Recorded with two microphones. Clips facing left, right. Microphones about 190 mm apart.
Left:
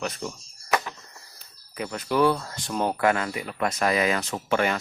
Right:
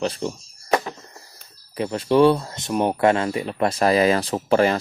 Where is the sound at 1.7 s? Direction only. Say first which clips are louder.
Right 7 dB; 30° right (ahead or behind).